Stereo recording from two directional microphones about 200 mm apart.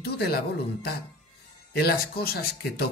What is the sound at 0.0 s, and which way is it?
Music, 50° left (ahead or behind).